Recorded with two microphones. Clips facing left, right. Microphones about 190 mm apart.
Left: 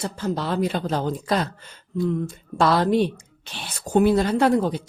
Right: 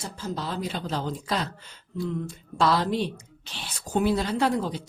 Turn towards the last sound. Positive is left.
turn(degrees=55)  # may be behind; listen again after turning